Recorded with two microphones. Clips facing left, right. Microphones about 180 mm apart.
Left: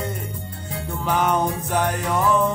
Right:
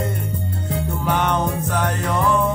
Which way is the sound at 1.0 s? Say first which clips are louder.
Left 1 dB; 5° left (ahead or behind).